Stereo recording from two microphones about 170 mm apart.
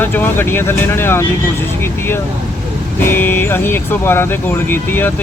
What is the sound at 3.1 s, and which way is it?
Speech, 10° left (ahead or behind).